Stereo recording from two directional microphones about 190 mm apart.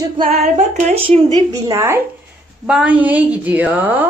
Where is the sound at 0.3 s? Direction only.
35° right (ahead or behind); by 2.0 s 15° right (ahead or behind).